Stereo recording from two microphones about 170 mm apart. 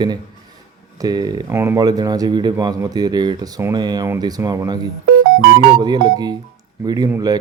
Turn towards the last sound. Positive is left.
turn(degrees=-20)  # may be behind; listen again after turning